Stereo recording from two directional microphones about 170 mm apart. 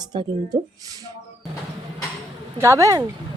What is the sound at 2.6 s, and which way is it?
Speech, 15° right (ahead or behind).